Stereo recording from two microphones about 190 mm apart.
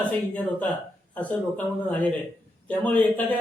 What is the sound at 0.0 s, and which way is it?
A man's voice, 5° left (ahead or behind).